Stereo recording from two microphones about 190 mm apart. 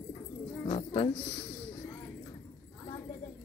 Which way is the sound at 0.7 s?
30° left (ahead or behind).